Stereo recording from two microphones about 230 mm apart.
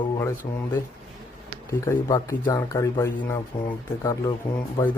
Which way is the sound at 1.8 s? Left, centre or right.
Centre.